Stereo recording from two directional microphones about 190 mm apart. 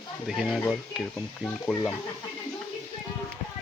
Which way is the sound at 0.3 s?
Centre (ahead or behind).